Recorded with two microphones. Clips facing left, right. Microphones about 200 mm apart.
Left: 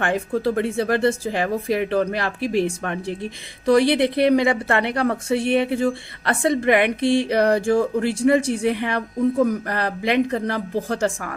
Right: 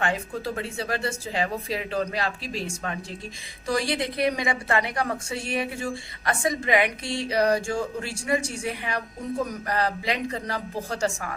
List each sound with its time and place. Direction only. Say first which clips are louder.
0.0 s a woman's voice: left 7 dB; 55° left (ahead or behind)